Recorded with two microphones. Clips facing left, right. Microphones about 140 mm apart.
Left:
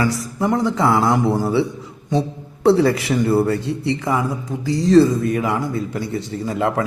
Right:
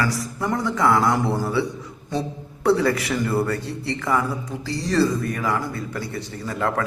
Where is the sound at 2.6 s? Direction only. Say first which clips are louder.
Left 5 dB; 25° left (ahead or behind).